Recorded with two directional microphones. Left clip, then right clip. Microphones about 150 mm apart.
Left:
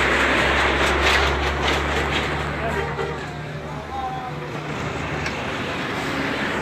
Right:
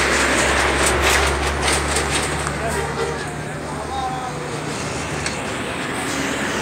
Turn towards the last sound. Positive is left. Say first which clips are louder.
# right 1 dB
turn(degrees=-45)  # may be behind; listen again after turning